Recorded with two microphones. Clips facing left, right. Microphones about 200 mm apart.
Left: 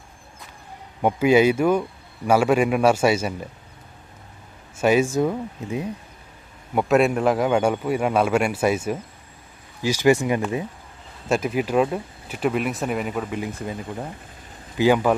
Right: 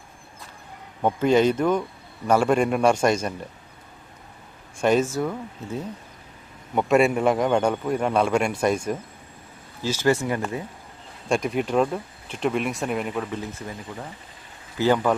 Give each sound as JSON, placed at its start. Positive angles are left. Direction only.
{"t": 1.0, "sound": "a man's voice", "side_deg": 10}
{"t": 4.8, "sound": "a man's voice", "side_deg": 10}
{"t": 6.7, "sound": "a man's voice", "side_deg": 0}
{"t": 11.3, "sound": "speech", "side_deg": 5}
{"t": 13.4, "sound": "a man's voice", "side_deg": 15}
{"t": 14.8, "sound": "a man's voice", "side_deg": 10}